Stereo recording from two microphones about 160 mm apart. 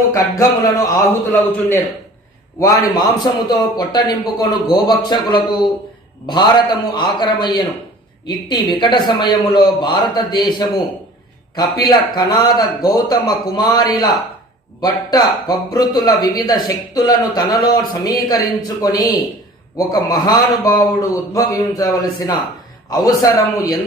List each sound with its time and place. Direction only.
0.1 s speech: 20° left (ahead or behind)
2.9 s speech: 25° left (ahead or behind)